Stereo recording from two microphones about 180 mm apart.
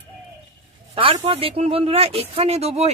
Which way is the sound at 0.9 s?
30° right (ahead or behind).